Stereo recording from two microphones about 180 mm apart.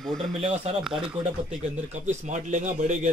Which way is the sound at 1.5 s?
40° right (ahead or behind).